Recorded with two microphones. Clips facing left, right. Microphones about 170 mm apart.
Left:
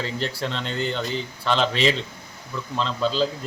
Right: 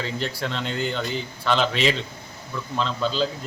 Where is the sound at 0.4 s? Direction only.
5° right (ahead or behind).